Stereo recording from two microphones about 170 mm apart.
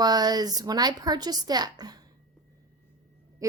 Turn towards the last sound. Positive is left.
turn(degrees=-20)  # may be behind; listen again after turning